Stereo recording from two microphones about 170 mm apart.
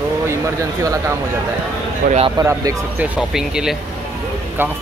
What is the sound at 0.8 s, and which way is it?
Speech, 20° right (ahead or behind).